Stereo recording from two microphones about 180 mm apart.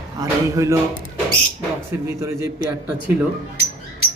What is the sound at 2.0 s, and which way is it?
Speech, 15° right (ahead or behind).